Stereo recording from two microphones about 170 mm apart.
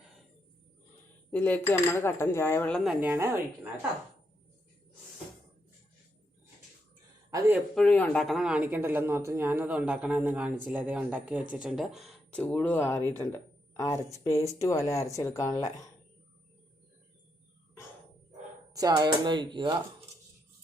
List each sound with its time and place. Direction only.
1.3 s speech: 10° left (ahead or behind)
2.8 s speech: 5° right (ahead or behind)
7.3 s a sound: 15° right (ahead or behind)
7.8 s speech: 10° left (ahead or behind)
18.7 s speech: 20° right (ahead or behind)